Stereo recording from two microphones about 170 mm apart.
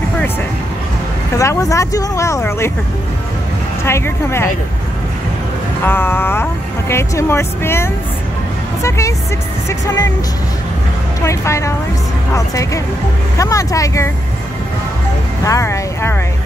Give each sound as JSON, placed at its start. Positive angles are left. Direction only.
{"t": 1.4, "sound": "speech", "side_deg": 20}
{"t": 3.8, "sound": "speech", "side_deg": 15}
{"t": 5.9, "sound": "speech", "side_deg": 15}
{"t": 11.2, "sound": "speech", "side_deg": 15}
{"t": 15.4, "sound": "speech", "side_deg": 20}